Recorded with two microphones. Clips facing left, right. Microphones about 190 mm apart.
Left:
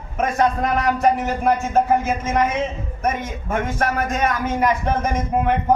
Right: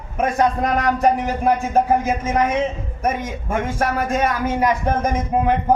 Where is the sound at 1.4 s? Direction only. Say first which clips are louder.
Right 1 dB; 15° right (ahead or behind).